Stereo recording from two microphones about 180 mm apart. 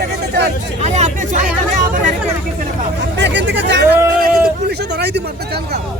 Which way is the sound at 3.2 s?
75° right (ahead or behind).